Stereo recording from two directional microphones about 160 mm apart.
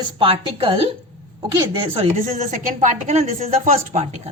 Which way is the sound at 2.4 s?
50° right (ahead or behind).